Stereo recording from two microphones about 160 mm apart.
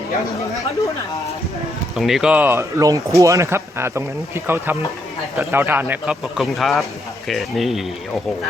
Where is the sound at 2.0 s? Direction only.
Centre (ahead or behind).